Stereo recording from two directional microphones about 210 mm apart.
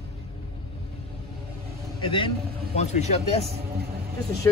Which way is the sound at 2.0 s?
25° left (ahead or behind).